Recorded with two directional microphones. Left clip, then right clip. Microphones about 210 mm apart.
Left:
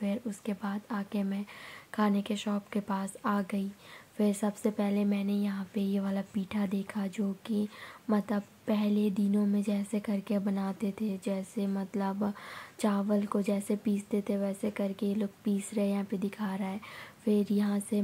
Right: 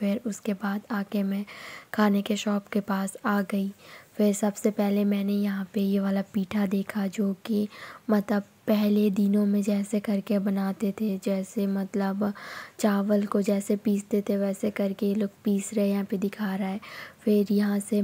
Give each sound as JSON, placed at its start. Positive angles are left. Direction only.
{"t": 0.0, "sound": "speech", "side_deg": -25}